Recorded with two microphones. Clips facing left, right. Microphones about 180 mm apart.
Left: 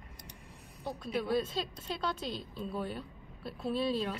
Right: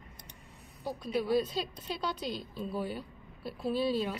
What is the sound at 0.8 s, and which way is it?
A woman's voice, centre (ahead or behind).